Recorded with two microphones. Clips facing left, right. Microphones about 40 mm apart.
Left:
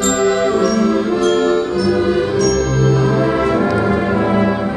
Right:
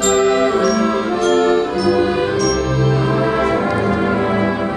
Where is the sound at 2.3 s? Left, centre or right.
Centre.